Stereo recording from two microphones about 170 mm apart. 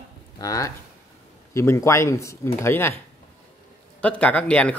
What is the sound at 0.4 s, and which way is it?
A man's voice, 20° left (ahead or behind).